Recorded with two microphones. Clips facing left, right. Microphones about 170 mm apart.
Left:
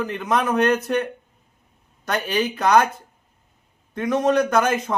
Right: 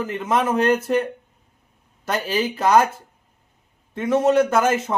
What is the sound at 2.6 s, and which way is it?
Speech, 5° right (ahead or behind).